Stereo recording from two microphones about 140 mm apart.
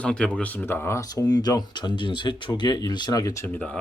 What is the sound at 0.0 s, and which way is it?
Speech, 10° left (ahead or behind).